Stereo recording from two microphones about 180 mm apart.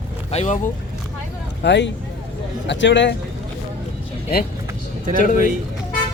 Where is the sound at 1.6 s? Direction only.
80° left.